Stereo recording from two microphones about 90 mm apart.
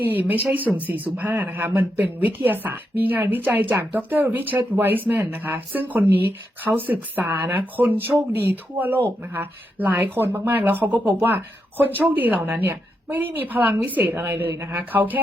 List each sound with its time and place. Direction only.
0.0 s speech: 20° right (ahead or behind)